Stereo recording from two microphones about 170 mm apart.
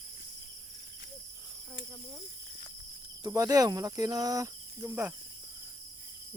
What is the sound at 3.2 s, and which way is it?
Speech, 20° right (ahead or behind).